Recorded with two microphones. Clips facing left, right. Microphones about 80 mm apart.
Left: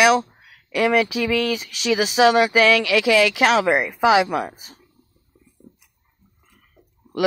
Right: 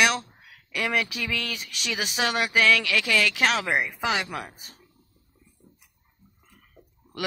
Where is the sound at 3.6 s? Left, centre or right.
Left.